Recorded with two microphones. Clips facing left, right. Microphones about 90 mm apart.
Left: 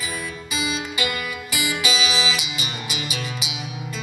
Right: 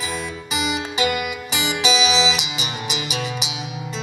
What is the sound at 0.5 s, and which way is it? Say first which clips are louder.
Music: right 3 dB; 20° right (ahead or behind).